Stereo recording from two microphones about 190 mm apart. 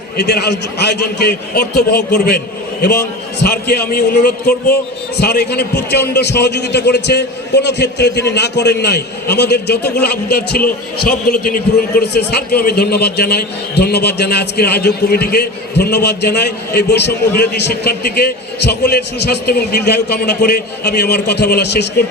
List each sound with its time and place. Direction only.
0.2 s a man's voice: 60° left (ahead or behind)
3.4 s a man's voice: 55° left (ahead or behind)